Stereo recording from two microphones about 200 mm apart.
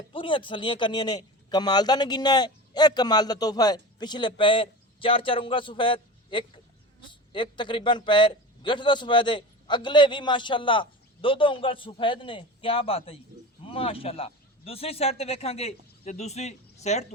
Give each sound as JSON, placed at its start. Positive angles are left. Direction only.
{"t": 0.1, "sound": "speech", "side_deg": 25}